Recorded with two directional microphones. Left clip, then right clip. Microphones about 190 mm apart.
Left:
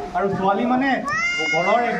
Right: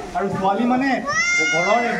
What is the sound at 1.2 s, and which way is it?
Speech, 45° right (ahead or behind).